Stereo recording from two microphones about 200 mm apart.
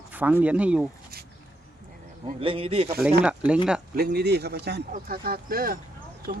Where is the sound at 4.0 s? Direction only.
50° right (ahead or behind).